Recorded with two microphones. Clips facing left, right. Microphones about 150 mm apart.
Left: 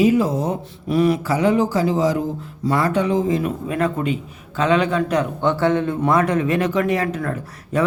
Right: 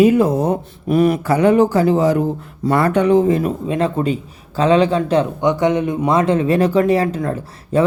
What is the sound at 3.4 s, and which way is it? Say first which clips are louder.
A man's voice: right 3 dB; 25° right (ahead or behind).